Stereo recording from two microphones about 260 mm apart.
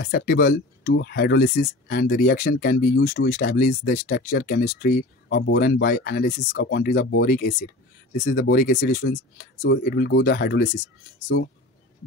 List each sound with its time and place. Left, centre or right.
0.0 s speech: left